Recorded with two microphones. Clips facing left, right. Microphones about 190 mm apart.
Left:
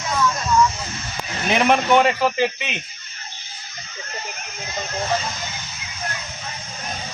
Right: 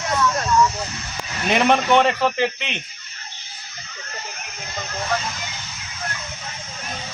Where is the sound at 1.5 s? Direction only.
Centre (ahead or behind).